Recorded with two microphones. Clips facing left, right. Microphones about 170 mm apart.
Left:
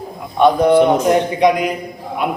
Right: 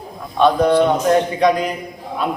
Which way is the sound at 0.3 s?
15° left (ahead or behind).